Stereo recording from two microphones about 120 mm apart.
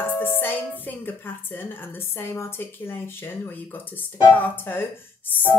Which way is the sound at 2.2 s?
20° left (ahead or behind).